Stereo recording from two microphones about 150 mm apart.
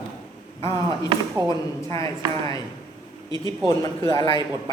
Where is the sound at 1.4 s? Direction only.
20° left (ahead or behind).